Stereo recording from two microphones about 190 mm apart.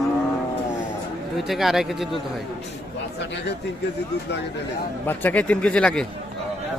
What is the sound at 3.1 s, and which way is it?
Speech, 65° left (ahead or behind).